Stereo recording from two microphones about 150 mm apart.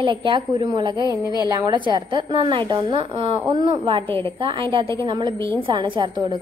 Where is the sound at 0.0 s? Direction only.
35° right (ahead or behind).